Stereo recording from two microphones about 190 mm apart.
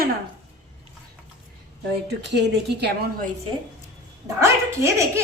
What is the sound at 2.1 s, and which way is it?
Speech, 65° right (ahead or behind).